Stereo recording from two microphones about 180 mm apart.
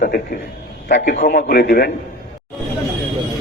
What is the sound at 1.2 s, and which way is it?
Speech, 65° left (ahead or behind).